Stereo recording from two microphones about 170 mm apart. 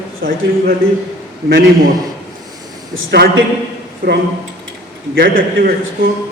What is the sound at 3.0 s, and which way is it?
A man's voice, 65° right (ahead or behind).